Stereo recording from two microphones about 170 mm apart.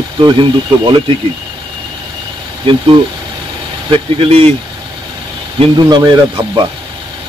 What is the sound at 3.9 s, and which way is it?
Speech, 35° right (ahead or behind).